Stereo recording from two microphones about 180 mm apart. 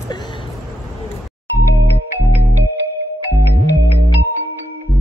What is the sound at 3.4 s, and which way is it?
Music, 60° left (ahead or behind).